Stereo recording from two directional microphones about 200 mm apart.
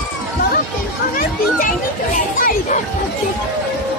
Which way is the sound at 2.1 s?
45° left (ahead or behind).